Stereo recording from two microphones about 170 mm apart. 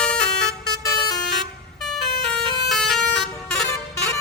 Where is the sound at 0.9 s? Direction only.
25° left (ahead or behind).